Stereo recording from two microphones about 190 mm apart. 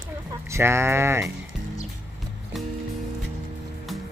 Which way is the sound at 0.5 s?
15° right (ahead or behind).